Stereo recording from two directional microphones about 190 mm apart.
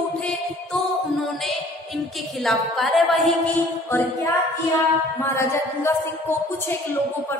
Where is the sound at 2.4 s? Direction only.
Centre (ahead or behind).